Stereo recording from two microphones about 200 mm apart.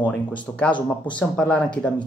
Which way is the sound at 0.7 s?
25° left (ahead or behind).